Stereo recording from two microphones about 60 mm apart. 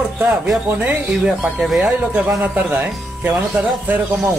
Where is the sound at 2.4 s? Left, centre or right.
Right.